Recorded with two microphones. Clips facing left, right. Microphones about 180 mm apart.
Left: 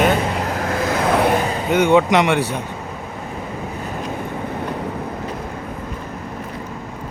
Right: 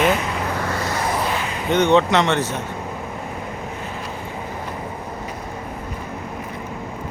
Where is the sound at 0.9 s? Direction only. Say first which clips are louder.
Left 9 dB; 65° left (ahead or behind).